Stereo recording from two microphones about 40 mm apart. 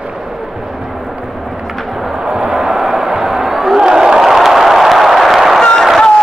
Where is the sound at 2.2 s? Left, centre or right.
Centre.